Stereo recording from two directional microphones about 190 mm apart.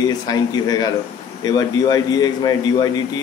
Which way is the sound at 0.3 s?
20° left (ahead or behind).